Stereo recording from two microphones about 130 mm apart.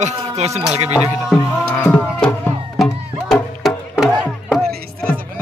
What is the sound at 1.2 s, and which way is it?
Speech, 5° left (ahead or behind).